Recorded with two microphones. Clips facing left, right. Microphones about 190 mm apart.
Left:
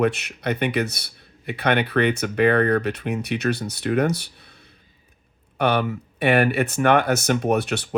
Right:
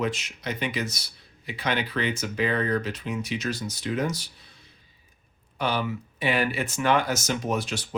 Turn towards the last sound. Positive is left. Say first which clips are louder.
# left 7 dB
turn(degrees=65)  # may be behind; listen again after turning